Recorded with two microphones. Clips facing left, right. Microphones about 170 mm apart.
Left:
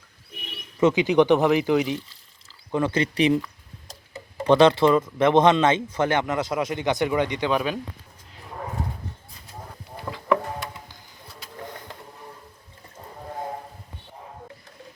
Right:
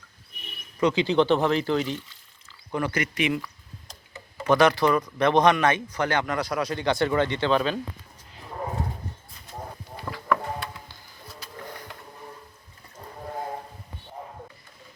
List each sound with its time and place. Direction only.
0.8 s speech: 20° left (ahead or behind)
2.0 s a sound: 35° left (ahead or behind)
2.7 s speech: 25° left (ahead or behind)